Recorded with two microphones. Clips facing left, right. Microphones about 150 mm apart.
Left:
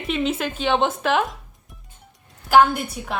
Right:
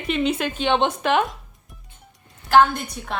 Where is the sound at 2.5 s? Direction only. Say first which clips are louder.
Left 1 dB; 10° left (ahead or behind).